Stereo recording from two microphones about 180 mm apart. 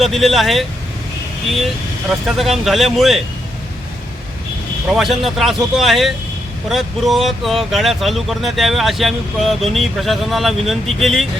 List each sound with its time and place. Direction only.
0.0 s speech: centre (ahead or behind)
2.0 s speech: centre (ahead or behind)
4.9 s speech: centre (ahead or behind)